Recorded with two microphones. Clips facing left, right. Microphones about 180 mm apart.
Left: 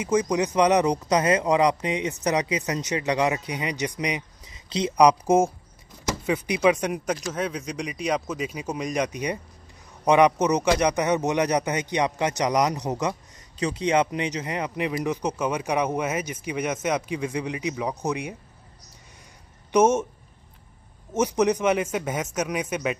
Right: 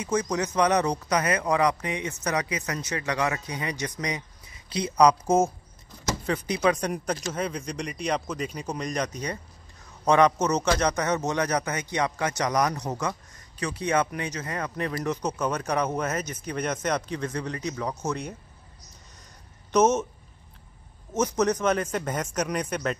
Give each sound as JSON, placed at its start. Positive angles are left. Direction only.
{"t": 0.0, "sound": "speech", "side_deg": 15}
{"t": 19.7, "sound": "speech", "side_deg": 10}
{"t": 21.1, "sound": "speech", "side_deg": 10}